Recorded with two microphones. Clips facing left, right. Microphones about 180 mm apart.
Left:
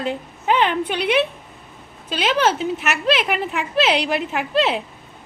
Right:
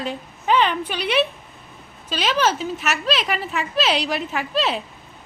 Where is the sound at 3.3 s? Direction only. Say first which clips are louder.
Left 2 dB; 15° left (ahead or behind).